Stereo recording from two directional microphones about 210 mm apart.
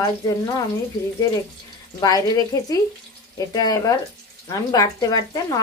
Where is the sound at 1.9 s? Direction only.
20° left (ahead or behind).